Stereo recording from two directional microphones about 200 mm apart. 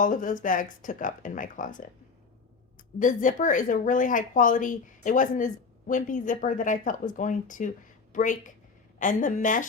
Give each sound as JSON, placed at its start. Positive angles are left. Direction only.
{"t": 0.0, "sound": "speech", "side_deg": 40}